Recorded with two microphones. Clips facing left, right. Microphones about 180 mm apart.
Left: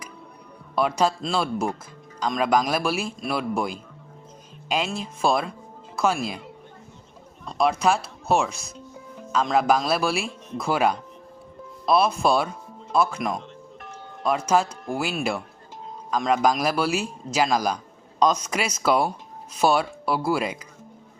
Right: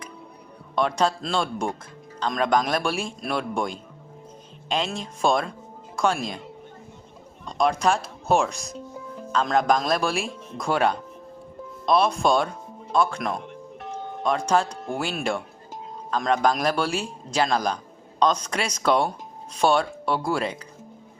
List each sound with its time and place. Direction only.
0.8 s a man's voice: 5° left (ahead or behind)
7.4 s a man's voice: 5° left (ahead or behind)
13.7 s music: 15° right (ahead or behind)
14.3 s a man's voice: 5° left (ahead or behind)